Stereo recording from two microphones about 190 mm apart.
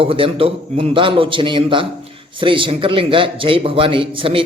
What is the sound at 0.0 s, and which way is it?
A man's voice, 30° right (ahead or behind).